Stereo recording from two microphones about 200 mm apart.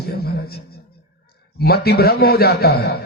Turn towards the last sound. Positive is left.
turn(degrees=50)  # may be behind; listen again after turning